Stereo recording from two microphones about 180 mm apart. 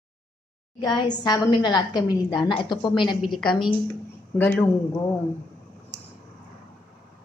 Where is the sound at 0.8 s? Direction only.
25° left (ahead or behind).